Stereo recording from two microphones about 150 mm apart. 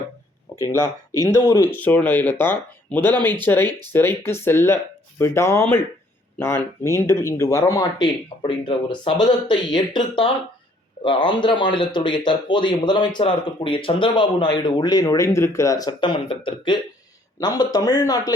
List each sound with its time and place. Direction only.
0.5 s speech: 20° left (ahead or behind)